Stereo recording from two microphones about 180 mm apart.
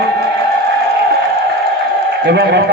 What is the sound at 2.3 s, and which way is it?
Speech, 70° right (ahead or behind).